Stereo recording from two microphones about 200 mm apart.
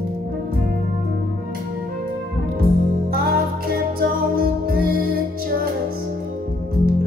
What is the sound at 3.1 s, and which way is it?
Music, 45° right (ahead or behind).